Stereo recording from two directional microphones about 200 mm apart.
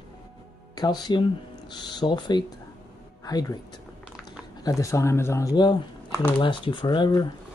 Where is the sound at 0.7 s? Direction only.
20° left (ahead or behind).